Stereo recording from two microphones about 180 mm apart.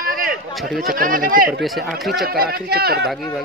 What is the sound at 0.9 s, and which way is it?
Speech, 50° right (ahead or behind).